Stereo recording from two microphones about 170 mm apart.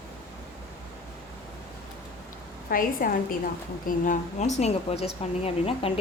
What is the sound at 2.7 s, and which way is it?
A woman's voice, 55° left (ahead or behind).